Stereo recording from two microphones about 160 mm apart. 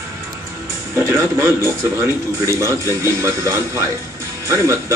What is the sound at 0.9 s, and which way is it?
Speech, 15° right (ahead or behind).